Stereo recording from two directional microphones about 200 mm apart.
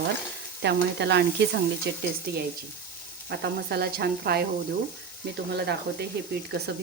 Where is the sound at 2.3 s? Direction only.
55° right (ahead or behind).